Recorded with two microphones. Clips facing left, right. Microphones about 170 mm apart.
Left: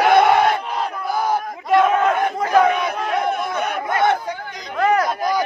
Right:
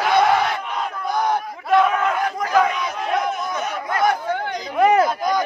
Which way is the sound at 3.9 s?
25° left (ahead or behind).